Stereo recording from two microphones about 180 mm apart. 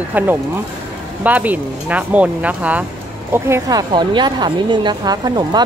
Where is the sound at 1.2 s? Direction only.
10° right (ahead or behind).